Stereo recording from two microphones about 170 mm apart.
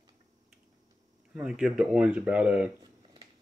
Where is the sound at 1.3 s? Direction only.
5° right (ahead or behind).